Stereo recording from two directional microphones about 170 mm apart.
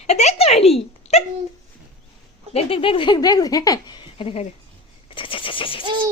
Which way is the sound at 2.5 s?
35° left (ahead or behind).